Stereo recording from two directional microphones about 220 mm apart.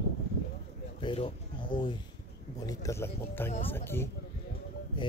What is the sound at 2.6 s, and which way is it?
Speech, 15° left (ahead or behind).